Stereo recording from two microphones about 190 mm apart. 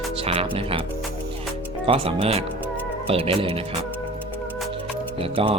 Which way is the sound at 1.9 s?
30° right (ahead or behind).